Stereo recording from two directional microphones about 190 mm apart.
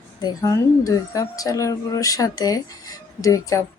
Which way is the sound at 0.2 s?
15° left (ahead or behind).